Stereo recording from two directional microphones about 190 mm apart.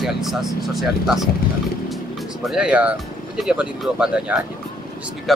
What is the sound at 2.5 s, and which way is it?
Speech, 5° right (ahead or behind).